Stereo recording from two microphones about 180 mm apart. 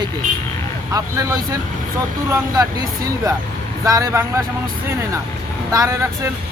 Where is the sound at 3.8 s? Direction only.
20° right (ahead or behind).